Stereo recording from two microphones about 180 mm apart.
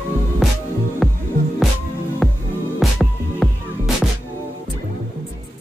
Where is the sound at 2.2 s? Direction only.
Centre (ahead or behind).